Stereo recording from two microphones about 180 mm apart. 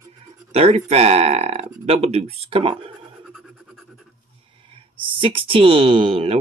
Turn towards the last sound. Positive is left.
turn(degrees=-30)  # may be behind; listen again after turning